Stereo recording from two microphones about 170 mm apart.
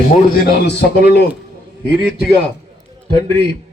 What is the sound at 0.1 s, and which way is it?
Speech, 70° left (ahead or behind).